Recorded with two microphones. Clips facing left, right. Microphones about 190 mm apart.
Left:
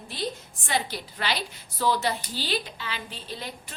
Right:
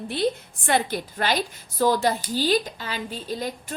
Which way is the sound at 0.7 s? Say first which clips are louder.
Right 6 dB; 55° right (ahead or behind).